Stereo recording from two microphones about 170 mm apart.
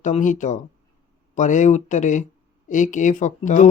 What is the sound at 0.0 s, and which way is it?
Speech, 45° left (ahead or behind).